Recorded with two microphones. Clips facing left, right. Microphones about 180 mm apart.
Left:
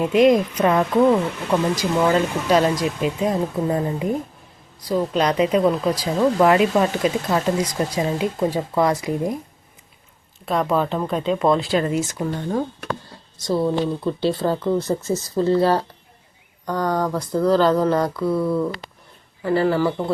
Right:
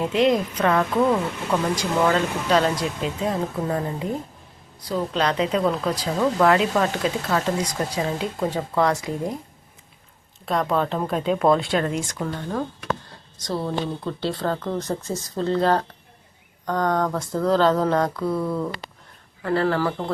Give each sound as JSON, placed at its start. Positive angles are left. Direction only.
{"t": 0.0, "sound": "speech", "side_deg": 10}
{"t": 4.9, "sound": "speech", "side_deg": 10}
{"t": 10.4, "sound": "speech", "side_deg": 0}
{"t": 12.1, "sound": "speech", "side_deg": 20}
{"t": 14.0, "sound": "speech", "side_deg": 10}